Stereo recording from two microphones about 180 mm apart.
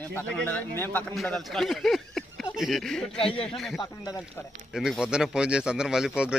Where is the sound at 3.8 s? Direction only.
20° left (ahead or behind).